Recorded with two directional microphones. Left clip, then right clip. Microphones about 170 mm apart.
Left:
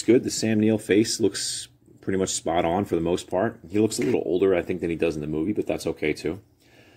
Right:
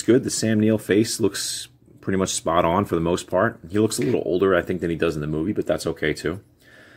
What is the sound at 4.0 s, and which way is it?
Speech, 10° right (ahead or behind).